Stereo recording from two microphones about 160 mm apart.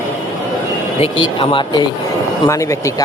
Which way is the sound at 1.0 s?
35° left (ahead or behind).